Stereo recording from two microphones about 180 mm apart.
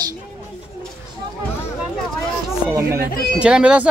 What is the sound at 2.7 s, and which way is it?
Speech, 15° right (ahead or behind).